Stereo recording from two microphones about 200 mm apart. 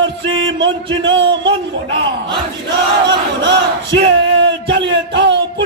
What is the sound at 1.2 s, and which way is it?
Speech, 60° right (ahead or behind).